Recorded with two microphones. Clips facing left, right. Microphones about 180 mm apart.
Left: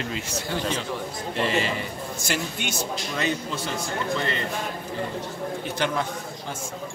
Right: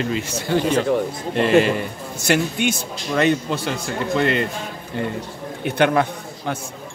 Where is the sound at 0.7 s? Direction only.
55° right (ahead or behind).